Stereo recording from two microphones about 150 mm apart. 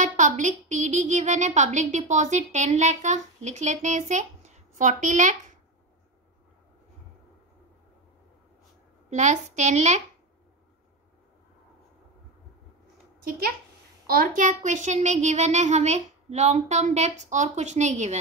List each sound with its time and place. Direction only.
0.0 s a woman's voice: 55° right (ahead or behind)
9.1 s a woman's voice: 50° right (ahead or behind)
14.0 s a woman's voice: 80° right; by 18.1 s 50° right (ahead or behind)